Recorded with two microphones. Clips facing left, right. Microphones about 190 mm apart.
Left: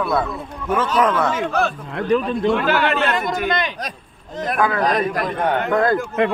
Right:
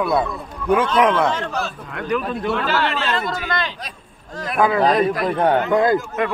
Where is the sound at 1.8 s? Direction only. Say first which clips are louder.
Left 3 dB; 30° left (ahead or behind).